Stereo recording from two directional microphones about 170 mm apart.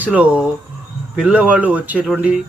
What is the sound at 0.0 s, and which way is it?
Speech, 10° right (ahead or behind).